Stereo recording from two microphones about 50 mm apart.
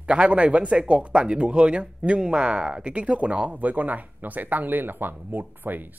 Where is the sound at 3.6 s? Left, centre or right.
Right.